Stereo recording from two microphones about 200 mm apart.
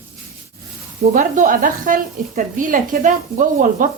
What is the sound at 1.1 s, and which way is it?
A woman's voice, 40° right (ahead or behind).